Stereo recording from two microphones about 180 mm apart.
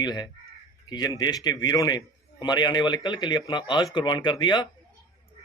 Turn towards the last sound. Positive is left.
turn(degrees=25)  # may be behind; listen again after turning